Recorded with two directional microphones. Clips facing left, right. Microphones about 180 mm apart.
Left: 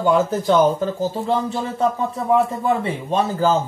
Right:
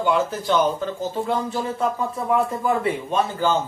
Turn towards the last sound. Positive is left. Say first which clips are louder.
# left 3 dB
turn(degrees=35)  # may be behind; listen again after turning